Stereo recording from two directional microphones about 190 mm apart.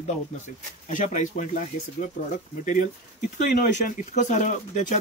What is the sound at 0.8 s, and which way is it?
Speech, 40° left (ahead or behind).